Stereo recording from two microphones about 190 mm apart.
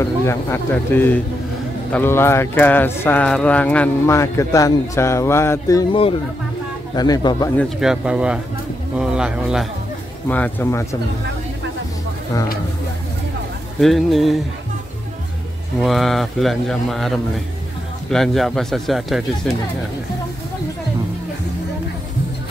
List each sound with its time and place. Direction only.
0.0 s speech: 15° left (ahead or behind)
7.5 s speech: 5° right (ahead or behind)
10.2 s speech: 10° left (ahead or behind)
13.7 s speech: centre (ahead or behind)
15.8 s speech: centre (ahead or behind)